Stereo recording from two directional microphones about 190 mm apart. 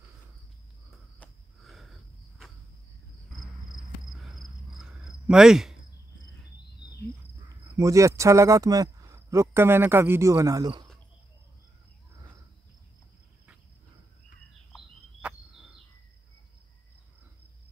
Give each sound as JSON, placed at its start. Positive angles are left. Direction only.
{"t": 0.8, "sound": "cricket", "side_deg": 0}
{"t": 3.7, "sound": "cricket", "side_deg": 0}
{"t": 7.7, "sound": "speech", "side_deg": -15}